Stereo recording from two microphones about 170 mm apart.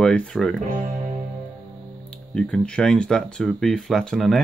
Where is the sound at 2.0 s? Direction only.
5° left (ahead or behind).